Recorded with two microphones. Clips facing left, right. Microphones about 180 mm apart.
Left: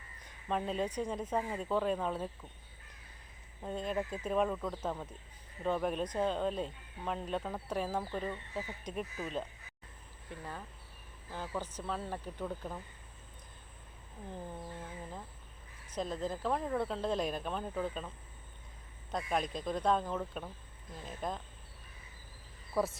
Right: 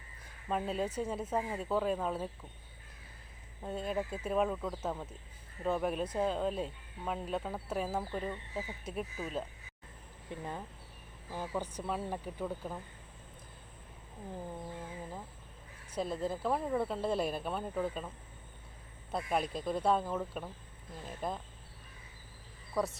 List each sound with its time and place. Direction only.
0.3 s speech: 5° right (ahead or behind)
3.6 s speech: 5° right (ahead or behind)
10.2 s speech: 20° right (ahead or behind)
15.9 s speech: 5° right (ahead or behind)
19.1 s speech: 5° right (ahead or behind)
22.7 s speech: centre (ahead or behind)